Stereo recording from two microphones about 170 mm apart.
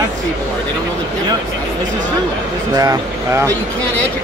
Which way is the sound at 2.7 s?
20° right (ahead or behind).